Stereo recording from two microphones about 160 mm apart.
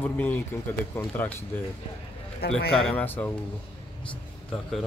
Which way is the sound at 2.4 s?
80° left.